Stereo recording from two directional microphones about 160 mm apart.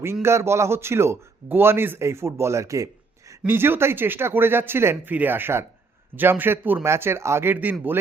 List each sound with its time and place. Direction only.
0.0 s a man's voice: 15° right (ahead or behind)